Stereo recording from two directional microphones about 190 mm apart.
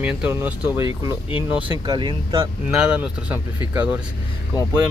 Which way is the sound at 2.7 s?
5° right (ahead or behind).